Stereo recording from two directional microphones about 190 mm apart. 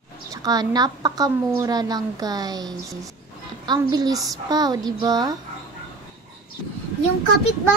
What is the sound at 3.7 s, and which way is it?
Speech, 20° right (ahead or behind).